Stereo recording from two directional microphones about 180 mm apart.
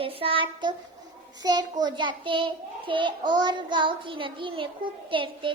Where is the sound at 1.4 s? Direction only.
20° right (ahead or behind).